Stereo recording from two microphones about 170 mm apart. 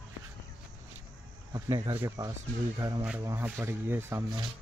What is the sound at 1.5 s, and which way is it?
Speech, 25° right (ahead or behind).